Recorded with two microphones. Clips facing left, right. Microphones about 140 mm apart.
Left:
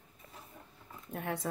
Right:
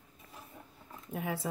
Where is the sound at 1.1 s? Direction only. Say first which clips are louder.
Right 1 dB; 5° right (ahead or behind).